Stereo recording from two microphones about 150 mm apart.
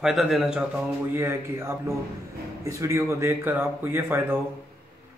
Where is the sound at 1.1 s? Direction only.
15° right (ahead or behind).